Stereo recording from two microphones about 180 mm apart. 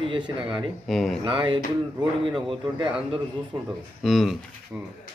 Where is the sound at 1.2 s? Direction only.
30° right (ahead or behind).